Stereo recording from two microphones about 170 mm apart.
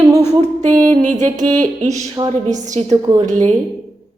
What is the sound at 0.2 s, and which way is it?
Music, 40° right (ahead or behind).